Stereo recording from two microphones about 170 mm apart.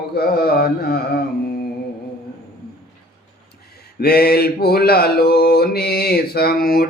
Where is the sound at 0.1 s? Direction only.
65° left (ahead or behind).